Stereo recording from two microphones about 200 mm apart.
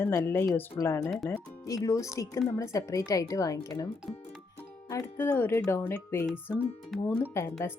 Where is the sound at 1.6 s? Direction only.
15° left (ahead or behind).